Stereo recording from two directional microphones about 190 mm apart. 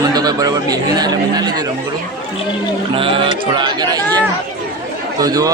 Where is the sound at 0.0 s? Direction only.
20° right (ahead or behind).